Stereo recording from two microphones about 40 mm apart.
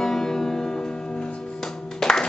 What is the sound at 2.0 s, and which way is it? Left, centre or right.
Music, centre.